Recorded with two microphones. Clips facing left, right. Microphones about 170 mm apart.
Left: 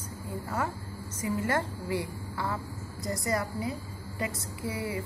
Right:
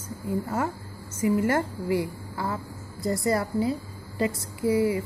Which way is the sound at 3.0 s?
20° left (ahead or behind).